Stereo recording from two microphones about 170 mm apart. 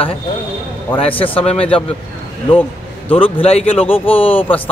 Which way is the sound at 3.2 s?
35° left (ahead or behind).